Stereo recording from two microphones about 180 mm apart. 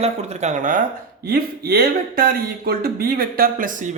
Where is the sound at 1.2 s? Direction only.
55° right (ahead or behind).